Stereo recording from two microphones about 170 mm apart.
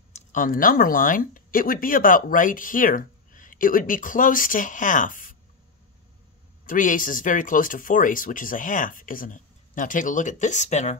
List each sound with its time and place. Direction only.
0.1 s speech: 50° left (ahead or behind)
6.6 s speech: 50° left (ahead or behind)